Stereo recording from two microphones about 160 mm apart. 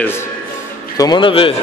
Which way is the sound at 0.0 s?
15° left (ahead or behind).